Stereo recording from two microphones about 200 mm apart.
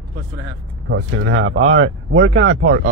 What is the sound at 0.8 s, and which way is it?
Speech, 90° right.